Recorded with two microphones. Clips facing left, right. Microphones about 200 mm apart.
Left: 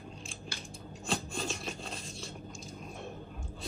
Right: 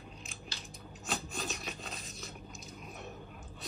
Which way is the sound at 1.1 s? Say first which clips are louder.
Left 3 dB; centre (ahead or behind).